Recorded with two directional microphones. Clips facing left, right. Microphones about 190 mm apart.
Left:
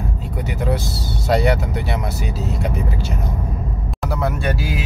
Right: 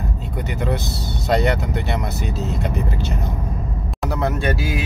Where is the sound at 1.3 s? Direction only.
5° left (ahead or behind).